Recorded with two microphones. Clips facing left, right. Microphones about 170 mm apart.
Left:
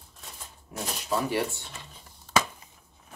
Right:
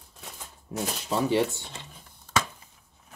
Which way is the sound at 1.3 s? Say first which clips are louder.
Right 4 dB; 25° right (ahead or behind).